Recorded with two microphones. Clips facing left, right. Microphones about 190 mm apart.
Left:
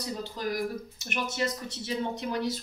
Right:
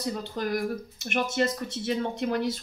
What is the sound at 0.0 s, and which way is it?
Speech, 55° right (ahead or behind).